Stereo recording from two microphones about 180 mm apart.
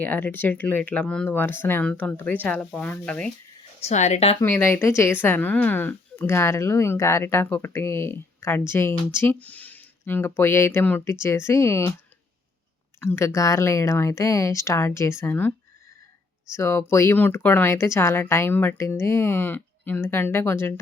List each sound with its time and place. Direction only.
0.0 s speech: 10° left (ahead or behind)
3.8 s a woman's voice: 40° left (ahead or behind)
4.4 s speech: 10° left (ahead or behind)
13.0 s speech: 15° left (ahead or behind)
16.6 s speech: 15° left (ahead or behind)